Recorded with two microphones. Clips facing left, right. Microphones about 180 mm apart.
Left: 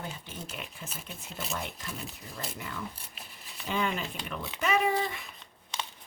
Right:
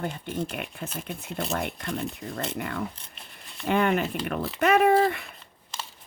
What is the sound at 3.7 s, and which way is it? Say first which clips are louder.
Speech: right 8 dB; 60° right (ahead or behind).